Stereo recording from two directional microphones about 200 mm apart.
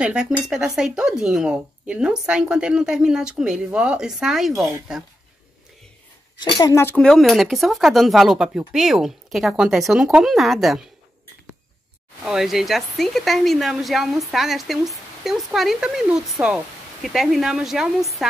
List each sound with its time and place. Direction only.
0.0 s a woman's voice: 5° right (ahead or behind)
6.4 s a woman's voice: 15° left (ahead or behind); by 10.8 s centre (ahead or behind)
12.3 s a woman's voice: centre (ahead or behind)
18.2 s a sound: centre (ahead or behind)